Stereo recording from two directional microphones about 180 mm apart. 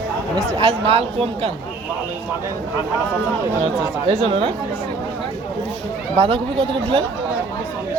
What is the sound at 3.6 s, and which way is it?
Speech, 35° right (ahead or behind).